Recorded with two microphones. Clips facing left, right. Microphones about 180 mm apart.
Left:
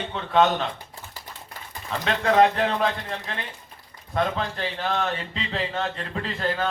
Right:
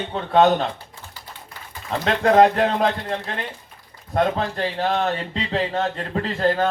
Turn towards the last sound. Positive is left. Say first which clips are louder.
# right 6 dB
turn(degrees=-40)  # may be behind; listen again after turning